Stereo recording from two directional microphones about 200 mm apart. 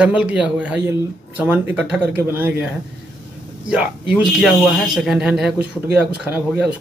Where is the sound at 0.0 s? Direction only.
5° right (ahead or behind).